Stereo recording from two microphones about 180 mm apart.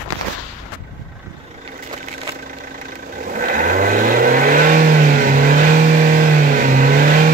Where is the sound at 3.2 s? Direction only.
50° right (ahead or behind).